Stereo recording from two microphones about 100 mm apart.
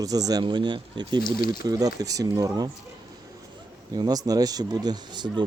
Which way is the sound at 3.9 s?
40° right (ahead or behind).